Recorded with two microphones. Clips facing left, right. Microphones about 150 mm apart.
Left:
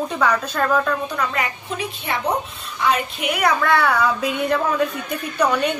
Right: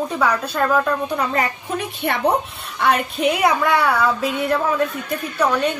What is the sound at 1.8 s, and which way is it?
Speech, 60° right (ahead or behind).